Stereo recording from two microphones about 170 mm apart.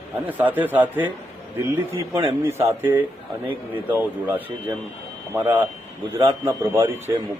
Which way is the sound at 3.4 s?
10° right (ahead or behind).